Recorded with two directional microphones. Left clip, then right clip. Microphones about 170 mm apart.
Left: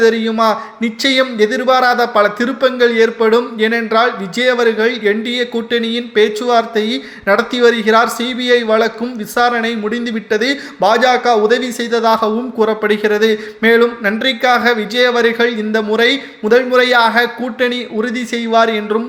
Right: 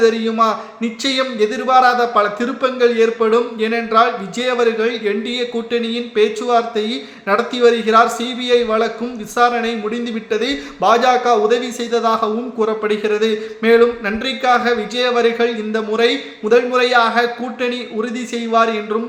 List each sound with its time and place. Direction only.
0.0 s a man's voice: 30° left (ahead or behind)